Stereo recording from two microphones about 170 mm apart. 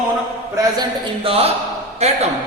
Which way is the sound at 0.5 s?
30° right (ahead or behind).